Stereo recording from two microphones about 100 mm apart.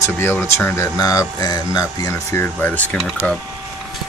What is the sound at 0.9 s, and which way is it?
Speech, 40° left (ahead or behind).